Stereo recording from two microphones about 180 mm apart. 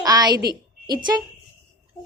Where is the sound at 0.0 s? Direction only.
20° right (ahead or behind).